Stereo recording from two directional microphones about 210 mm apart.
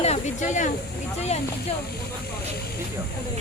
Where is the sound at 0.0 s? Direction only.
30° left (ahead or behind).